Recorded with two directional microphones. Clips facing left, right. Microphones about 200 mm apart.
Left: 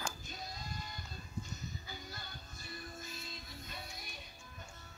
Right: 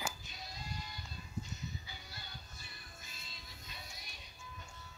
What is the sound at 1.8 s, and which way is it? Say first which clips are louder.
Music: left 5 dB; 45° left (ahead or behind).